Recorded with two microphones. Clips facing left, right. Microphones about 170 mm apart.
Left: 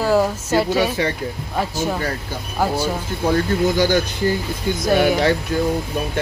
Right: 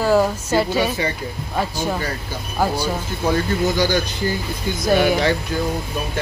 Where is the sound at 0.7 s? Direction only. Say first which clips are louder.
Left 2 dB; 70° left (ahead or behind).